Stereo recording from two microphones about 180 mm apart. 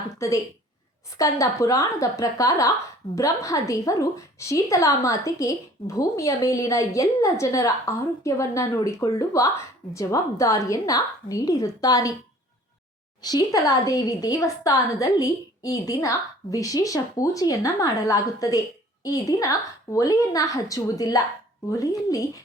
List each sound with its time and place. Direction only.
0.2 s a woman's voice: 15° left (ahead or behind)
13.2 s a woman's voice: 20° left (ahead or behind)